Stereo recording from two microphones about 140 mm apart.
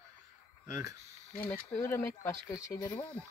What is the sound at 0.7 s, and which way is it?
Speech, 25° right (ahead or behind).